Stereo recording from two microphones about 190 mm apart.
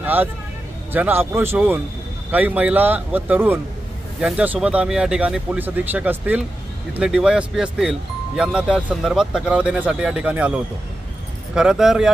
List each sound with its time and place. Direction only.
0.0 s speech: 10° right (ahead or behind)